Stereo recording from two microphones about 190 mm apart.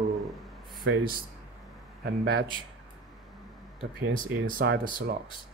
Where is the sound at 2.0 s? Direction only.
55° right (ahead or behind).